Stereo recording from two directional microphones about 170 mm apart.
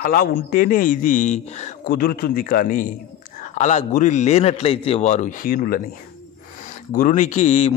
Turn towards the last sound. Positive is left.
turn(degrees=40)  # may be behind; listen again after turning